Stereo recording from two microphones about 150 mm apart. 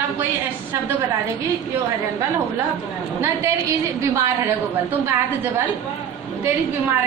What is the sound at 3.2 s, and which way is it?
A woman's voice, 20° right (ahead or behind).